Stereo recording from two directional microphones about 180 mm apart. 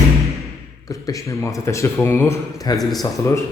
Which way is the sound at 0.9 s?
20° left (ahead or behind).